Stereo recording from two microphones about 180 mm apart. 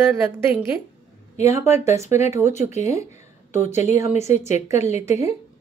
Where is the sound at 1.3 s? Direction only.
40° left (ahead or behind).